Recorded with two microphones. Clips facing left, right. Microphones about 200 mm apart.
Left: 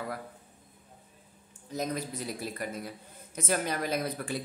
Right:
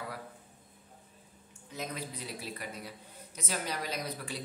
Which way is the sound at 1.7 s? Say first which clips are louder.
Left 6 dB; 40° left (ahead or behind).